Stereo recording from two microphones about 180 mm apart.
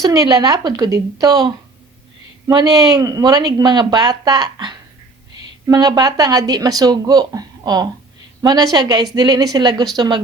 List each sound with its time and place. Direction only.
0.0 s speech: 20° right (ahead or behind)